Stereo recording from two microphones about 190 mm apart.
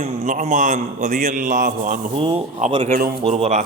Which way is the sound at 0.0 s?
35° right (ahead or behind).